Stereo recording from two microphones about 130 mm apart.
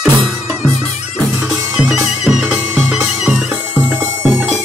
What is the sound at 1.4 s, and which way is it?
Music, 5° right (ahead or behind).